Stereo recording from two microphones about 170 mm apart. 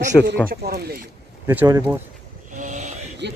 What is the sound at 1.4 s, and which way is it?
Speech, 15° right (ahead or behind).